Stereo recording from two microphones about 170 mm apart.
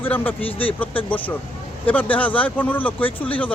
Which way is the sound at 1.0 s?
10° left (ahead or behind).